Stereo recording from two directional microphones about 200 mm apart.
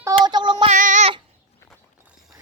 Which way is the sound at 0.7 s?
40° right (ahead or behind).